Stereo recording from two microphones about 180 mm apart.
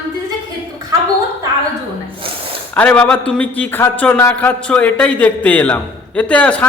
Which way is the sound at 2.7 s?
10° left (ahead or behind).